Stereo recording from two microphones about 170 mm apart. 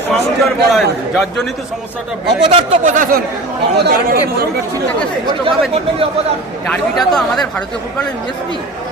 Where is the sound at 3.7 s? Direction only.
70° right (ahead or behind).